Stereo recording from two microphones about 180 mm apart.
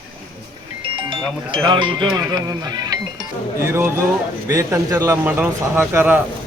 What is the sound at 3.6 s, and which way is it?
Speech, 15° right (ahead or behind).